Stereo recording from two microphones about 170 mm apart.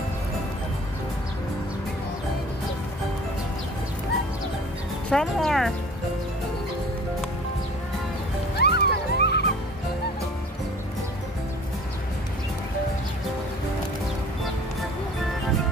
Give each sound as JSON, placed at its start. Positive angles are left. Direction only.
{"t": 5.1, "sound": "speech", "side_deg": 0}
{"t": 8.5, "sound": "music", "side_deg": 75}